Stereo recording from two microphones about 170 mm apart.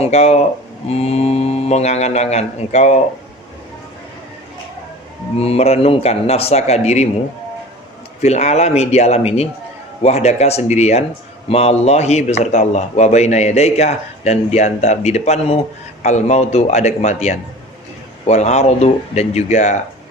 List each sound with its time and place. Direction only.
0.0 s a man's voice: 40° left (ahead or behind)
5.4 s a man's voice: 35° left (ahead or behind)
8.2 s a man's voice: 40° left (ahead or behind)